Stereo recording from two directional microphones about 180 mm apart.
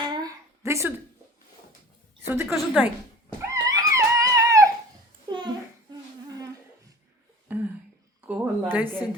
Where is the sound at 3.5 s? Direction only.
20° right (ahead or behind).